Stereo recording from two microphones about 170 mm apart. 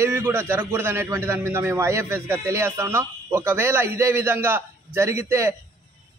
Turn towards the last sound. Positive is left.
turn(degrees=-15)  # may be behind; listen again after turning